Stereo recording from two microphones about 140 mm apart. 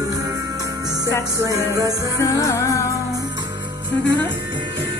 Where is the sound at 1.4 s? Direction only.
25° right (ahead or behind).